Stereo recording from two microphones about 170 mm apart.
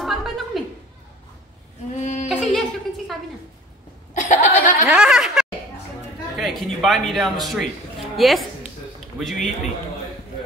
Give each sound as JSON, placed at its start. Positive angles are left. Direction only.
{"t": 0.0, "sound": "a sound", "side_deg": 0}
{"t": 2.0, "sound": "goat", "side_deg": 40}
{"t": 2.2, "sound": "a sound", "side_deg": 0}
{"t": 4.1, "sound": "laughter", "side_deg": 45}
{"t": 4.8, "sound": "chuckle", "side_deg": -5}
{"t": 6.3, "sound": "a woman's voice", "side_deg": 0}